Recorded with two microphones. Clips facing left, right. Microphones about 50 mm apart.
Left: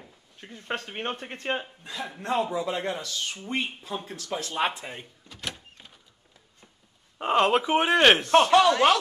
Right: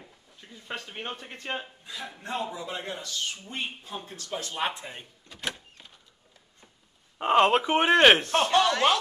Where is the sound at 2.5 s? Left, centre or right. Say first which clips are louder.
Left 6 dB; left.